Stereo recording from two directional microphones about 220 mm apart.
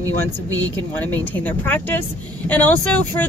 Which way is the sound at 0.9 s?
10° left (ahead or behind).